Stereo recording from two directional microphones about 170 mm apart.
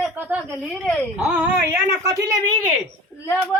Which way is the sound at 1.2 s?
5° right (ahead or behind).